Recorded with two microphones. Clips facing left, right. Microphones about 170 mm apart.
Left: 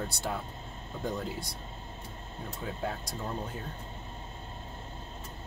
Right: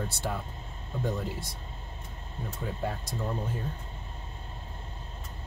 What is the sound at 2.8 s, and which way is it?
Speech, centre (ahead or behind).